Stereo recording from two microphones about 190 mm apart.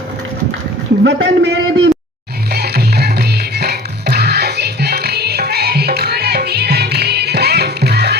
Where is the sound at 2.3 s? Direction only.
55° right (ahead or behind).